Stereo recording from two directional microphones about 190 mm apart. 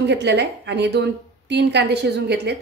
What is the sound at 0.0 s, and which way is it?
A woman's voice, 65° right (ahead or behind).